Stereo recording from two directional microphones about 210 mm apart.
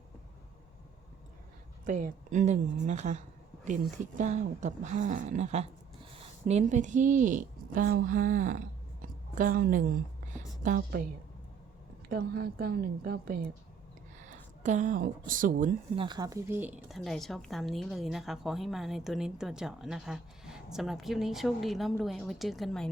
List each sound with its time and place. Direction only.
1.9 s a woman's voice: 35° right (ahead or behind)
12.0 s a woman's voice: 45° right (ahead or behind)
16.0 s speech: 20° right (ahead or behind)
16.9 s a woman's voice: centre (ahead or behind)